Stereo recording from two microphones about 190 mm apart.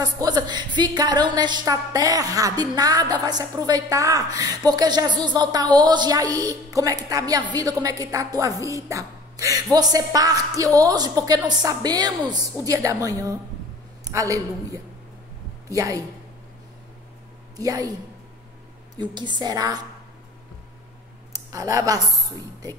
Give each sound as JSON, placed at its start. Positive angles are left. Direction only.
{"t": 0.0, "sound": "a woman's voice", "side_deg": -20}
{"t": 17.6, "sound": "a woman's voice", "side_deg": -20}
{"t": 18.9, "sound": "a woman's voice", "side_deg": -25}
{"t": 21.3, "sound": "a woman's voice", "side_deg": -15}